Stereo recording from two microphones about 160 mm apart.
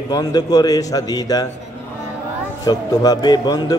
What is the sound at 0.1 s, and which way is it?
A man's voice, 25° left (ahead or behind).